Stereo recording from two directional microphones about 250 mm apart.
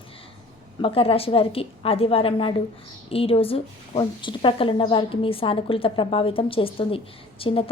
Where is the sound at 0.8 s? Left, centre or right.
Left.